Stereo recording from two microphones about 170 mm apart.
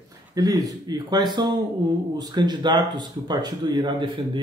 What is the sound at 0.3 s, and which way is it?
Speech, 20° right (ahead or behind).